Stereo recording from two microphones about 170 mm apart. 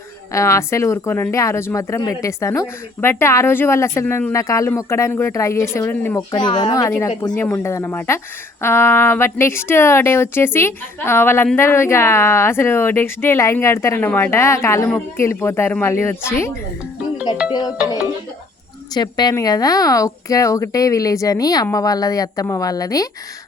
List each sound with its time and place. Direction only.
0.3 s speech: 15° left (ahead or behind)
6.3 s speech: 25° left (ahead or behind)
18.9 s speech: 25° left (ahead or behind)